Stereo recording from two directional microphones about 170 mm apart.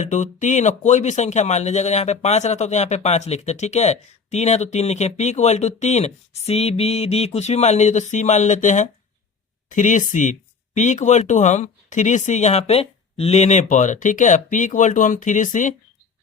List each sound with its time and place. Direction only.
0.0 s speech: 45° left (ahead or behind)